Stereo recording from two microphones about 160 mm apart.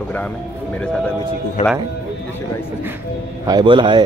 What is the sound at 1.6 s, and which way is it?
Speech, 40° left (ahead or behind).